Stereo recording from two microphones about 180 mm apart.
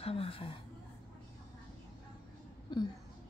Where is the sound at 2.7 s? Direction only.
25° left (ahead or behind).